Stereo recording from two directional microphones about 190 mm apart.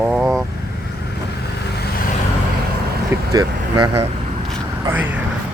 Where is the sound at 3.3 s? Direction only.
20° right (ahead or behind).